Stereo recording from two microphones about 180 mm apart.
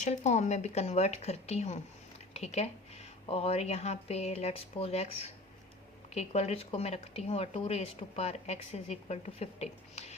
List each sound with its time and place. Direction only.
0.0 s speech: 40° left (ahead or behind)